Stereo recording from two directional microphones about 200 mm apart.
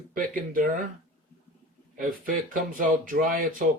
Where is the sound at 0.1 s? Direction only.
45° right (ahead or behind).